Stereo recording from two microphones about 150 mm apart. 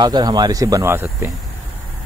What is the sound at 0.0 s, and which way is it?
Speech, 30° right (ahead or behind).